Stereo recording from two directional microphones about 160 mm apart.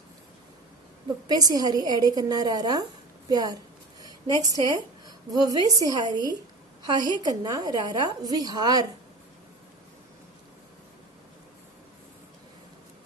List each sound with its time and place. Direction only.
1.3 s a woman's voice: 25° right (ahead or behind)